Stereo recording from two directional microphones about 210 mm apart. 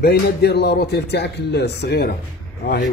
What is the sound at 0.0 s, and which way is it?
A man's voice, 50° left (ahead or behind).